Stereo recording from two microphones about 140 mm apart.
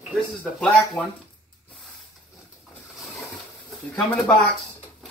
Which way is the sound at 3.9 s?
10° left (ahead or behind).